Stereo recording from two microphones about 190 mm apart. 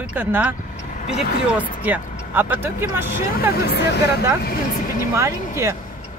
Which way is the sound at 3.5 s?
60° left (ahead or behind).